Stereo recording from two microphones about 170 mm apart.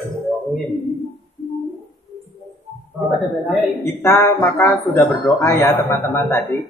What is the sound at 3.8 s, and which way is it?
Speech, 20° left (ahead or behind).